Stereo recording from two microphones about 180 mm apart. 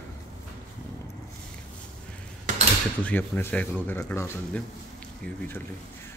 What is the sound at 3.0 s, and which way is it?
Speech, 10° left (ahead or behind).